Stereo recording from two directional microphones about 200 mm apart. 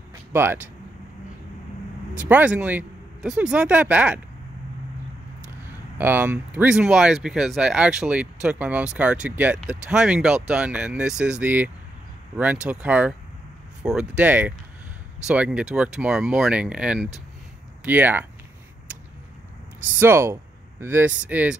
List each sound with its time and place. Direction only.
0.3 s speech: 10° right (ahead or behind)
2.1 s speech: 10° right (ahead or behind)
5.9 s speech: 10° right (ahead or behind)
20.0 s speech: 10° right (ahead or behind)